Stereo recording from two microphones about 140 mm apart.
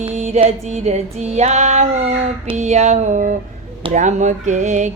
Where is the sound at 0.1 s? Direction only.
50° right (ahead or behind).